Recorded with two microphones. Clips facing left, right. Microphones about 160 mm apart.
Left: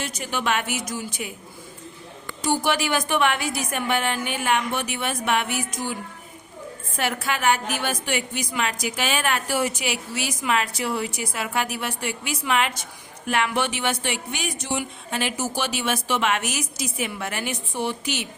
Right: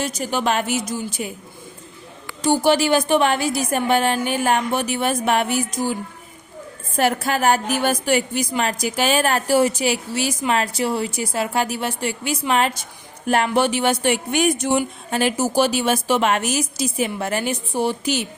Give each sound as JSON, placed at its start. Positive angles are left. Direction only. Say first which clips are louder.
{"t": 0.0, "sound": "speech", "louder": "right 5 dB", "side_deg": -35}
{"t": 2.5, "sound": "speech", "louder": "right 6 dB", "side_deg": -30}